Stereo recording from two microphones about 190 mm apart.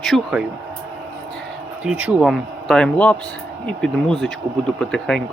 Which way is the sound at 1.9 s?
5° right (ahead or behind).